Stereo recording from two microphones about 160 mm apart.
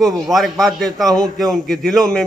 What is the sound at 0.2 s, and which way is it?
A man's voice, centre (ahead or behind).